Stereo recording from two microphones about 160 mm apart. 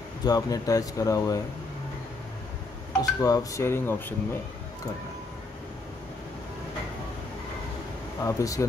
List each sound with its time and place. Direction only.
0.2 s speech: 25° left (ahead or behind)
3.0 s speech: 20° left (ahead or behind)
8.2 s speech: 20° left (ahead or behind)